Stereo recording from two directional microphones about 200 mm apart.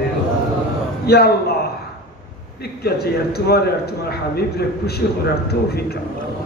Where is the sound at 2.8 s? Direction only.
50° left (ahead or behind).